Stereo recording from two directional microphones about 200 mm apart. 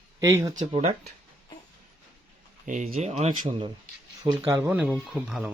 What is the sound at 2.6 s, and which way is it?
Speech, 35° right (ahead or behind).